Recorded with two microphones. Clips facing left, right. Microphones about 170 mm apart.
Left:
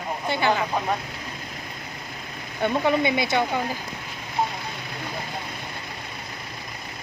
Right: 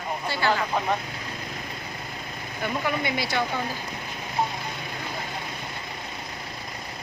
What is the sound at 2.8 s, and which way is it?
Speech, 20° left (ahead or behind).